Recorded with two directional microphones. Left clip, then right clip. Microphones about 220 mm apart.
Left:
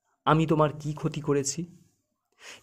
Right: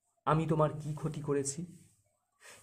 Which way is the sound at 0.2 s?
35° left (ahead or behind).